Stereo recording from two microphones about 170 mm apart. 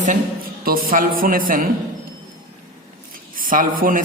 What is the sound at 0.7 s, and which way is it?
A man's voice, 55° right (ahead or behind).